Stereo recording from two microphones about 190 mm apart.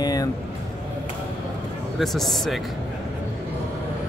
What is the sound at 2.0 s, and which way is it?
Speech, centre (ahead or behind).